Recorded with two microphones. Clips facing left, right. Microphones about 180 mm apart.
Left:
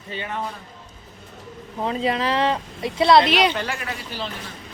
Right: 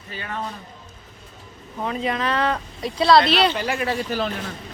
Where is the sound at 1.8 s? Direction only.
30° left (ahead or behind); by 3.5 s 10° left (ahead or behind).